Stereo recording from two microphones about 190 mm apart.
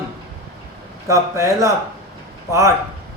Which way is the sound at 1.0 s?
15° right (ahead or behind).